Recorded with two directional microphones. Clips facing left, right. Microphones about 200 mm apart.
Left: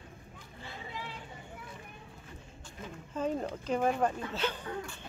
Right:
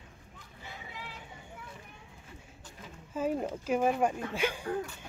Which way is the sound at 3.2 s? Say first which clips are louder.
Right 2 dB; 10° right (ahead or behind).